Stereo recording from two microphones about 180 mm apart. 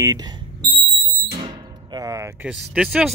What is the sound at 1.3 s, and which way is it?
Music, 25° right (ahead or behind).